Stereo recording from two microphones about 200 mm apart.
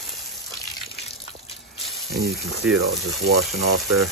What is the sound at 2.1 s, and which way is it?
Speech, 50° right (ahead or behind).